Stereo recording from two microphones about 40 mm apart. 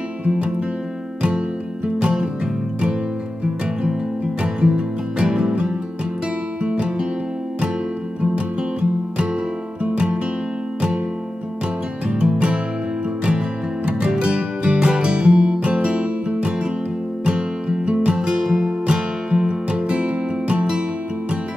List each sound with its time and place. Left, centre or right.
2.0 s music: right
4.4 s music: right
12.1 s music: right